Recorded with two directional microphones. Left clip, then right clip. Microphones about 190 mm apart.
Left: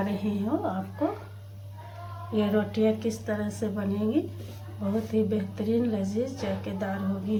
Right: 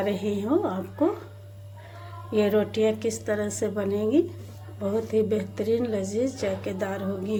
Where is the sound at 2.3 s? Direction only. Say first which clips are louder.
Right 4 dB; 45° right (ahead or behind).